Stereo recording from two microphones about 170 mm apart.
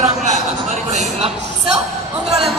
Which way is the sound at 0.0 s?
45° right (ahead or behind).